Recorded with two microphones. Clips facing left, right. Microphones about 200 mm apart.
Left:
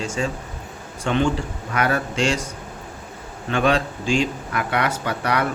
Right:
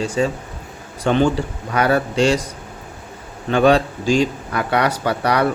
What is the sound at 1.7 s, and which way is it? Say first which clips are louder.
Speech: right 5 dB; 30° right (ahead or behind).